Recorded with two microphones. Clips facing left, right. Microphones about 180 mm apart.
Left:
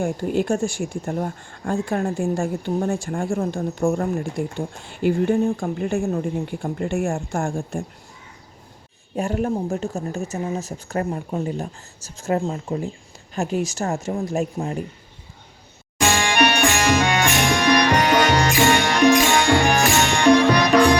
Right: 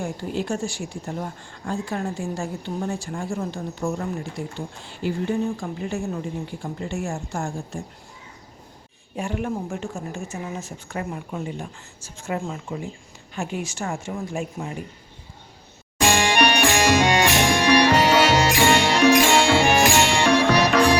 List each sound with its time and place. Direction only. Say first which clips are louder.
0.0 s speech: left 6 dB; 50° left (ahead or behind)
9.1 s a woman's voice: left 4 dB; 40° left (ahead or behind)
16.0 s music: even; 10° right (ahead or behind)